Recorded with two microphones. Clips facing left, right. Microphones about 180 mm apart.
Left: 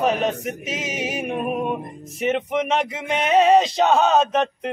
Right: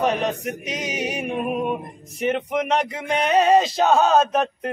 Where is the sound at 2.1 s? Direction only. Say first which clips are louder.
Left 1 dB; centre (ahead or behind).